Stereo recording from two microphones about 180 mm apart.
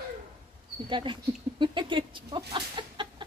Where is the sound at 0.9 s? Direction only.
25° right (ahead or behind).